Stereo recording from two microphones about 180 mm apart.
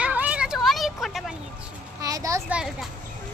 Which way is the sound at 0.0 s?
5° right (ahead or behind).